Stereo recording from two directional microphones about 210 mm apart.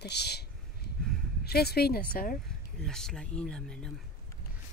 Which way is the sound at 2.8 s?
Centre (ahead or behind).